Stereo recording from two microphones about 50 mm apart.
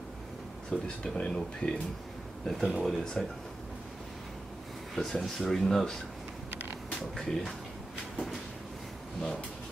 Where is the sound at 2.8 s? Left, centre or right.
Centre.